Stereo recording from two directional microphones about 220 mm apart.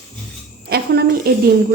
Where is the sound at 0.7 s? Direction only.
45° right (ahead or behind).